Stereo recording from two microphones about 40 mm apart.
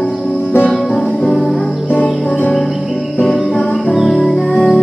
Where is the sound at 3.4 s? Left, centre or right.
Centre.